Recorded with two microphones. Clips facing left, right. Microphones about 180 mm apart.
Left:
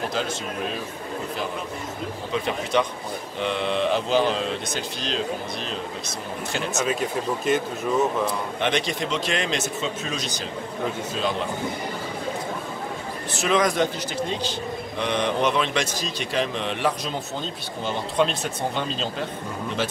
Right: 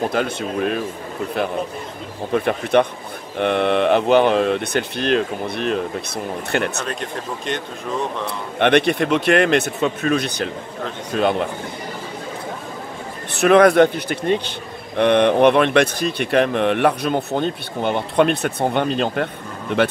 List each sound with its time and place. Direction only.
0.1 s speech: 60° right (ahead or behind)
2.3 s speech: 60° right (ahead or behind)
6.8 s speech: 5° left (ahead or behind)
8.5 s speech: 65° right (ahead or behind)
13.3 s speech: 60° right (ahead or behind)